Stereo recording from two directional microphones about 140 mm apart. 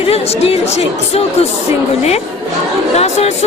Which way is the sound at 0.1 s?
45° left (ahead or behind).